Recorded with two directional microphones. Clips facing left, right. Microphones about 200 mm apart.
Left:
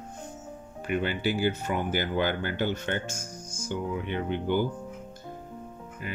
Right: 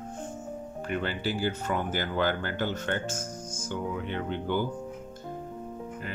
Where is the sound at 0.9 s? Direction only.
15° left (ahead or behind).